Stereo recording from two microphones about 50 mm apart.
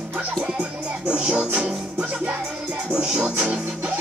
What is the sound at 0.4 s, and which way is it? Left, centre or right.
Music, right.